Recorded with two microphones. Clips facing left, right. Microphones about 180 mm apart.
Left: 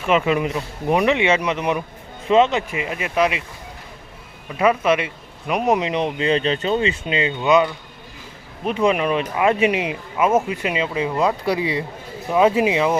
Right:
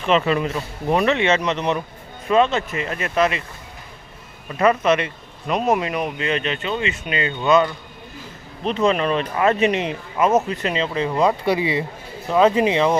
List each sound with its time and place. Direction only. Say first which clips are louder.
0.0 s speech: even; 10° left (ahead or behind)
2.2 s speech: left 2 dB; 20° left (ahead or behind)
4.4 s speech: even; 5° left (ahead or behind)